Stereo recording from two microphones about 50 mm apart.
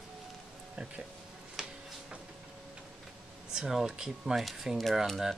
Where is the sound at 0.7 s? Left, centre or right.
Right.